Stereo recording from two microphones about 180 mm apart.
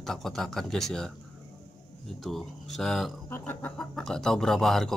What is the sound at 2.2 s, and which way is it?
Speech, centre (ahead or behind).